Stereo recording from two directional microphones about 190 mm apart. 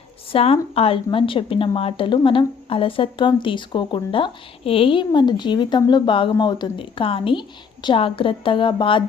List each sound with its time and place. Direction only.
0.3 s a woman's voice: 30° left (ahead or behind)